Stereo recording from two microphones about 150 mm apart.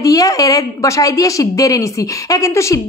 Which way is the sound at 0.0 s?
25° left (ahead or behind).